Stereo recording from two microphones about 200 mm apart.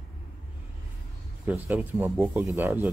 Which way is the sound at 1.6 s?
10° right (ahead or behind).